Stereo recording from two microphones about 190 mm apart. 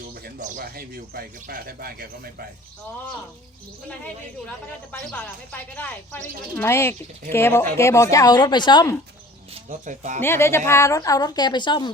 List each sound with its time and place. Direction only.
0.3 s speech: 45° right (ahead or behind)
3.8 s speech: 10° left (ahead or behind)
9.6 s speech: 40° right (ahead or behind)
10.2 s a woman's voice: 10° left (ahead or behind)